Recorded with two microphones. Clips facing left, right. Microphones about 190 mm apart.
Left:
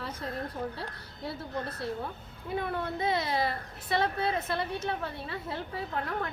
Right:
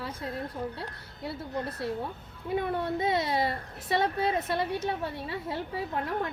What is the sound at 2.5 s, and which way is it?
A child's voice, 20° right (ahead or behind).